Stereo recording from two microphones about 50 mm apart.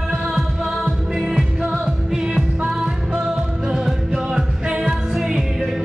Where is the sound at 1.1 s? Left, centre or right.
Centre.